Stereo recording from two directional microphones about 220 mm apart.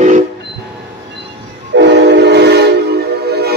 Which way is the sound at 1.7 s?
50° right (ahead or behind).